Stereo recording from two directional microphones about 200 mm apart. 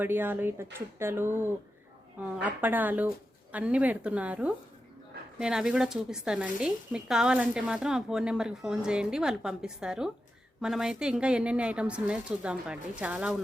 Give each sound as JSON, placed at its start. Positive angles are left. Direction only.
{"t": 0.0, "sound": "speech", "side_deg": -10}